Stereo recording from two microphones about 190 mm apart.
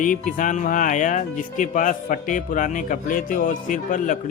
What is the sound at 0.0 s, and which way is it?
Speech, 45° left (ahead or behind).